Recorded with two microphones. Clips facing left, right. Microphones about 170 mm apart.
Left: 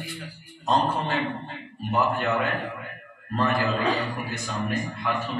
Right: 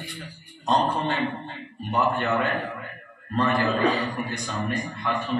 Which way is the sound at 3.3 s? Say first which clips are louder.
Right 1 dB; 5° left (ahead or behind).